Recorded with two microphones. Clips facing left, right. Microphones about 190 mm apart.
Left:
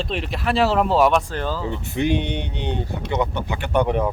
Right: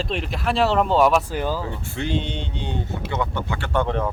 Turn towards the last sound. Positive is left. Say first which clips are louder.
# left 3 dB
turn(degrees=15)  # may be behind; listen again after turning